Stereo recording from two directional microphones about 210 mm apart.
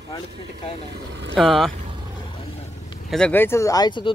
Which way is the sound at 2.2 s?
25° left (ahead or behind).